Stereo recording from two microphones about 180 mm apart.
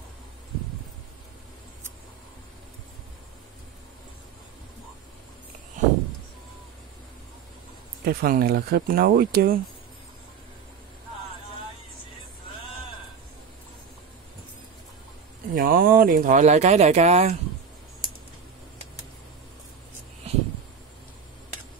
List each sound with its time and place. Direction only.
8.0 s speech: 55° right (ahead or behind)
15.5 s speech: 55° right (ahead or behind); by 17.4 s 35° right (ahead or behind)